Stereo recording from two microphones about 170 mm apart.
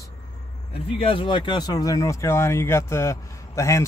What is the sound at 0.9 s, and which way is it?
Speech, 30° left (ahead or behind).